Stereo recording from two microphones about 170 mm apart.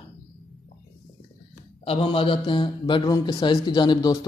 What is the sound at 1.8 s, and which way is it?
Speech, 35° left (ahead or behind).